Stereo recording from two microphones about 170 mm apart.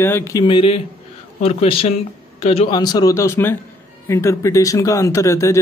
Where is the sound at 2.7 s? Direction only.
25° left (ahead or behind).